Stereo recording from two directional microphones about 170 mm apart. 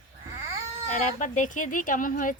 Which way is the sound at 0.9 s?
45° left (ahead or behind).